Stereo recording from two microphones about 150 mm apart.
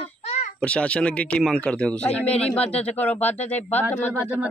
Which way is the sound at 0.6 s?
5° left (ahead or behind).